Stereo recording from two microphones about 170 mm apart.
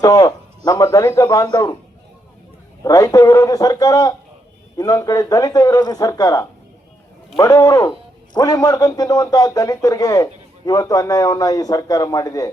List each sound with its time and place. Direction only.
0.0 s a man's voice: 20° left (ahead or behind)
2.8 s a man's voice: 20° left (ahead or behind)